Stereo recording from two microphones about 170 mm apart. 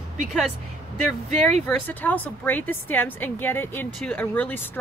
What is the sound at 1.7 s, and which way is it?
A woman's voice, 10° left (ahead or behind).